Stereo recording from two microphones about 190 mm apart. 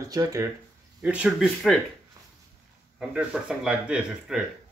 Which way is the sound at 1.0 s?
5° right (ahead or behind).